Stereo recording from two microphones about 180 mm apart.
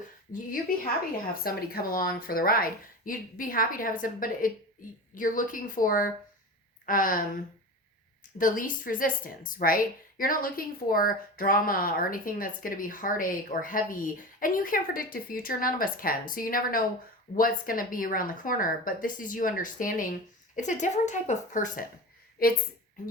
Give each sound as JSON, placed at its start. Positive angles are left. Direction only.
{"t": 1.5, "sound": "a woman's voice", "side_deg": 55}
{"t": 8.4, "sound": "a woman's voice", "side_deg": 50}